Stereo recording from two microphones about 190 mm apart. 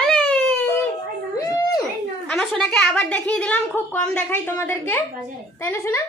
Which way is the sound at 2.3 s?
5° left (ahead or behind).